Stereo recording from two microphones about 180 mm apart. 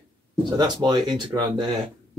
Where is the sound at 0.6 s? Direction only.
25° right (ahead or behind).